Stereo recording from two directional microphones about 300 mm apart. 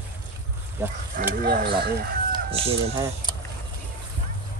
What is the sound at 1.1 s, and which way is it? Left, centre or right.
Speech, right.